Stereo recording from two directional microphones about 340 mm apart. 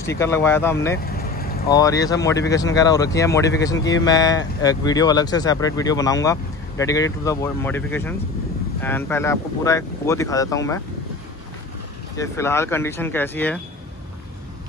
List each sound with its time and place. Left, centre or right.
0.0 s speech: centre
1.0 s vehicle: left
1.7 s speech: centre
12.2 s speech: centre